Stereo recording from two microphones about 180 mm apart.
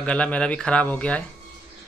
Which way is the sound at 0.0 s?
5° left (ahead or behind).